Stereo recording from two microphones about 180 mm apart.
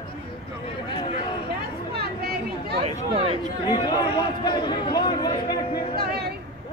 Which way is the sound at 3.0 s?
30° right (ahead or behind).